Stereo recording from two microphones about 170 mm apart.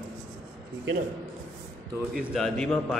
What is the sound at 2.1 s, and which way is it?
Speech, centre (ahead or behind).